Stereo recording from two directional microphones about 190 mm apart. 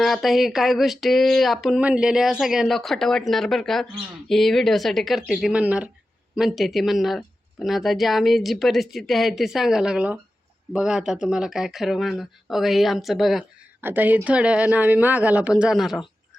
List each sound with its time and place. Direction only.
0.0 s speech: centre (ahead or behind)